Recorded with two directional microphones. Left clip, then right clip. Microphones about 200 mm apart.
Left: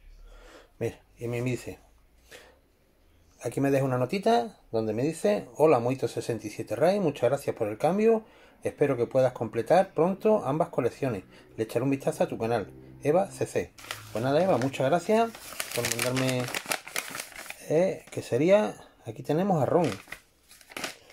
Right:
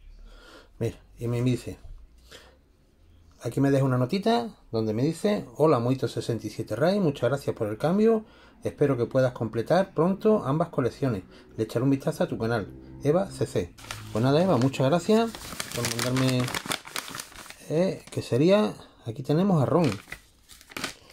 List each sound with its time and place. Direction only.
0.5 s speech: 5° right (ahead or behind)
3.3 s speech: centre (ahead or behind)
13.8 s speech: 20° right (ahead or behind)
16.7 s crumpling: 20° right (ahead or behind)
19.2 s speech: 10° right (ahead or behind)